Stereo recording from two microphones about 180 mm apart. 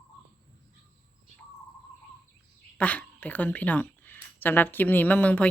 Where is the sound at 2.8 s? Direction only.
10° left (ahead or behind).